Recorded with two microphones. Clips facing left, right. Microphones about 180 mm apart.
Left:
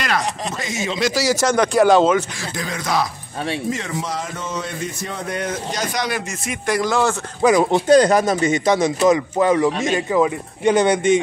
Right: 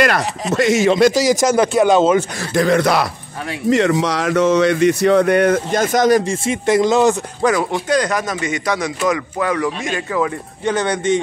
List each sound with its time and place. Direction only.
0.0 s speech: 60° right (ahead or behind)
1.1 s speech: 15° right (ahead or behind)
1.7 s speech: centre (ahead or behind)
2.5 s speech: 65° right (ahead or behind); by 6.2 s 45° right (ahead or behind)
6.4 s speech: 25° right (ahead or behind)
7.7 s speech: 30° left (ahead or behind); by 11.1 s 10° left (ahead or behind)